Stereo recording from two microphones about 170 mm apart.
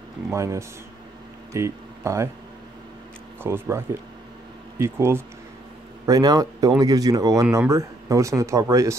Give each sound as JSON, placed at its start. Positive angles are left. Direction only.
{"t": 0.3, "sound": "speech", "side_deg": -15}
{"t": 3.4, "sound": "speech", "side_deg": -15}